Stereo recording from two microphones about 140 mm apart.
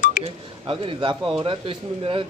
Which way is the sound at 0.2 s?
40° right (ahead or behind).